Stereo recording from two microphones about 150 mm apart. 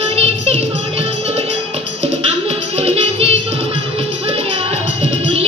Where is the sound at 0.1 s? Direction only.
45° right (ahead or behind).